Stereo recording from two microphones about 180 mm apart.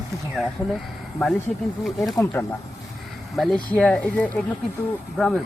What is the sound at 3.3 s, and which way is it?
Speech, centre (ahead or behind).